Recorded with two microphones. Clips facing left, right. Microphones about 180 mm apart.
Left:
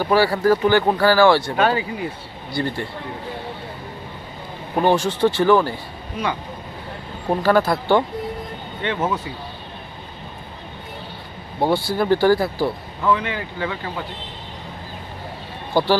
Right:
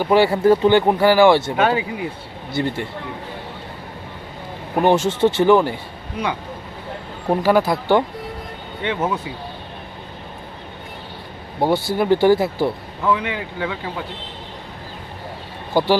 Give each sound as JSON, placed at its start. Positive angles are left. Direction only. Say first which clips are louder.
{"t": 0.0, "sound": "speech", "louder": "right 2 dB", "side_deg": -20}
{"t": 4.8, "sound": "speech", "louder": "right 2 dB", "side_deg": -20}
{"t": 7.3, "sound": "speech", "louder": "right 1 dB", "side_deg": -15}
{"t": 11.6, "sound": "speech", "louder": "right 1 dB", "side_deg": -15}